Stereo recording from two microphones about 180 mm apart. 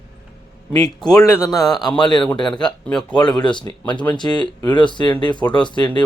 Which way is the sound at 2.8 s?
5° left (ahead or behind).